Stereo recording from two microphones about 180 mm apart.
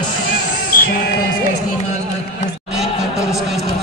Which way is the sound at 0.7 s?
55° left (ahead or behind).